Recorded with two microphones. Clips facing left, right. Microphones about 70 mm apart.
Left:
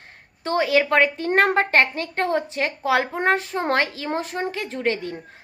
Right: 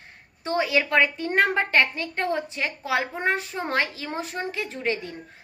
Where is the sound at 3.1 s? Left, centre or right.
Left.